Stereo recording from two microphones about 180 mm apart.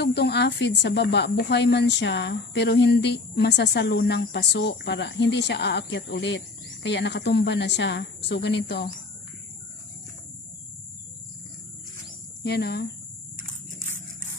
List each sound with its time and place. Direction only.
0.0 s speech: 65° left (ahead or behind)
12.4 s speech: 65° left (ahead or behind)